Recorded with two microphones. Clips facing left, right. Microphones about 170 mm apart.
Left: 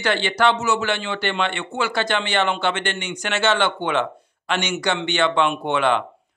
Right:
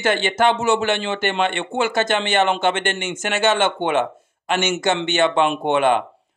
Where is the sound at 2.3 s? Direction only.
20° right (ahead or behind).